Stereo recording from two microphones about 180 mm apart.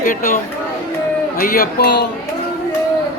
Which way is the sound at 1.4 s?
60° left (ahead or behind).